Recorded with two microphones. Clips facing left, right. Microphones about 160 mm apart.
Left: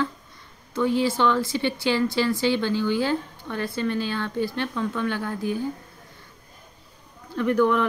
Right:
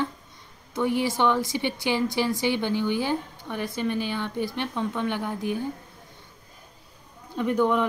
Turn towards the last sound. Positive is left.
turn(degrees=-20)  # may be behind; listen again after turning